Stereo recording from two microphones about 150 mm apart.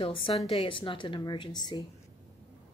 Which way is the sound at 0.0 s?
35° left (ahead or behind).